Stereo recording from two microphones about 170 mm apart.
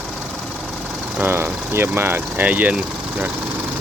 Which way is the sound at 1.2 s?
15° right (ahead or behind).